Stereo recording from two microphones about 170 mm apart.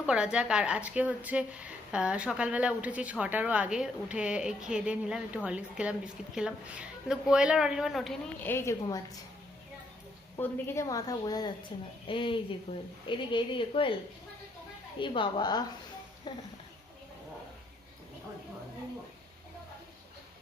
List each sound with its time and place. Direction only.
0.0 s a woman's voice: 5° right (ahead or behind)
8.4 s a woman's voice: 15° left (ahead or behind)
10.3 s a woman's voice: 15° left (ahead or behind)